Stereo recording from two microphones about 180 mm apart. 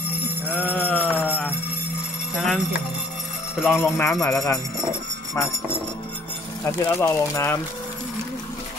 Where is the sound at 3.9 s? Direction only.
15° left (ahead or behind).